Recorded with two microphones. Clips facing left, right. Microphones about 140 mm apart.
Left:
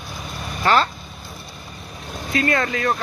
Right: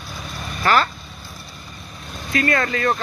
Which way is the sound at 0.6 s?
25° left (ahead or behind).